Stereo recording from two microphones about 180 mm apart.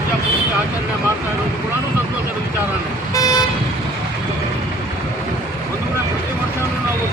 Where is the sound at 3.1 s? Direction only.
20° left (ahead or behind).